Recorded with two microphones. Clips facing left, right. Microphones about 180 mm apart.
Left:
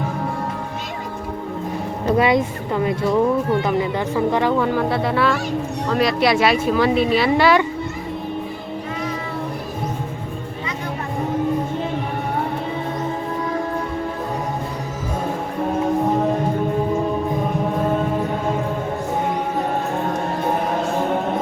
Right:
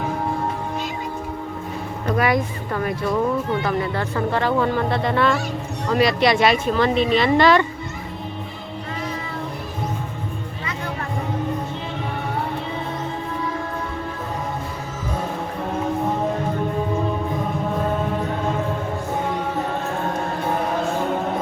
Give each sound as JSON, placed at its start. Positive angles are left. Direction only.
{"t": 2.0, "sound": "speech", "side_deg": 25}